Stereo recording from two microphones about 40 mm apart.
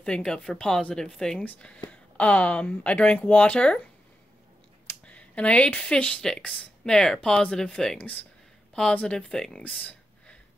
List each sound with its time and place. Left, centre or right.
0.2 s speech: centre
1.9 s speech: left
5.0 s a sound: left
5.9 s speech: left
6.8 s speech: centre
9.3 s speech: centre
9.6 s a sound: left